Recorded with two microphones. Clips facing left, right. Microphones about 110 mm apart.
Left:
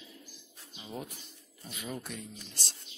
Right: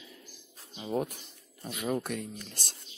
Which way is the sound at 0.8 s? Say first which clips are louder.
Right 10 dB; 55° right (ahead or behind).